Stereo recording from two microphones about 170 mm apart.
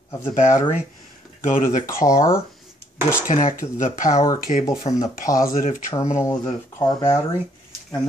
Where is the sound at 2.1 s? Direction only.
15° left (ahead or behind).